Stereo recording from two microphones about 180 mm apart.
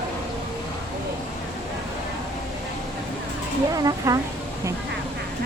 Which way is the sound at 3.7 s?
20° right (ahead or behind).